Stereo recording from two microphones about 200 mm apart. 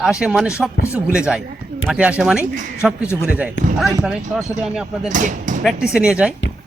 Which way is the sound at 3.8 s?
5° right (ahead or behind).